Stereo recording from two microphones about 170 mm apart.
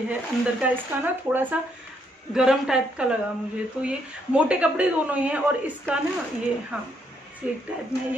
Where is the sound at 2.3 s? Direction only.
5° right (ahead or behind).